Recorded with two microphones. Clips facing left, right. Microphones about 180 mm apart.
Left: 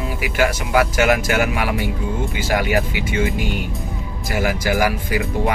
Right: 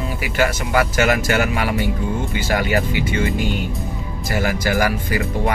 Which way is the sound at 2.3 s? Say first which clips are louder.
Left 1 dB; 10° left (ahead or behind).